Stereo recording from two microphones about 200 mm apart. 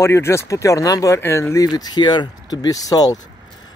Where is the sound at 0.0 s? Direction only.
15° left (ahead or behind).